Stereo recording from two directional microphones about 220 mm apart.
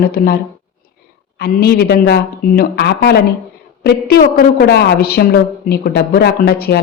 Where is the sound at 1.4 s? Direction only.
45° left (ahead or behind).